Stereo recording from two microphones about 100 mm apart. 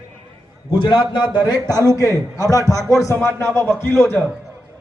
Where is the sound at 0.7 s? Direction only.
50° left (ahead or behind).